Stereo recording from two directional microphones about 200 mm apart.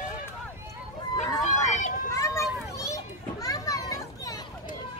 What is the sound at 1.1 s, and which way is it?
Run, 35° left (ahead or behind).